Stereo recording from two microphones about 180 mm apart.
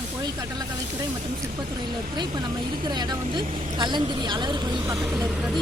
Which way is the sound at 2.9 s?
25° right (ahead or behind).